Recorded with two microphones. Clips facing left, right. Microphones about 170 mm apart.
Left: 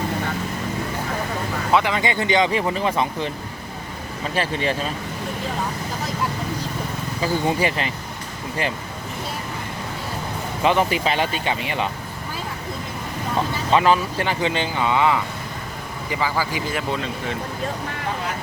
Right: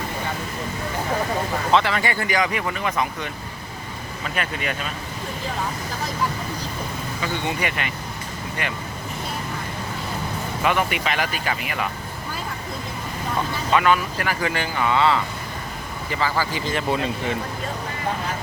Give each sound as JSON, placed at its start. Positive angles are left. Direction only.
{"t": 1.7, "sound": "speech", "side_deg": 15}
{"t": 4.4, "sound": "speech", "side_deg": 30}
{"t": 7.2, "sound": "speech", "side_deg": 35}
{"t": 10.6, "sound": "speech", "side_deg": 30}
{"t": 13.7, "sound": "speech", "side_deg": 30}